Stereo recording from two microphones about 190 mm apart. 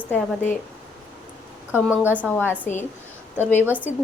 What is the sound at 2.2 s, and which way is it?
Speech, 5° left (ahead or behind).